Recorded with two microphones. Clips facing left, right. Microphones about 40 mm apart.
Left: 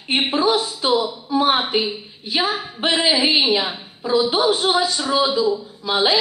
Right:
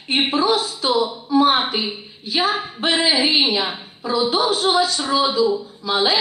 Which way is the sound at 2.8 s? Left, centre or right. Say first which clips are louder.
Even; left.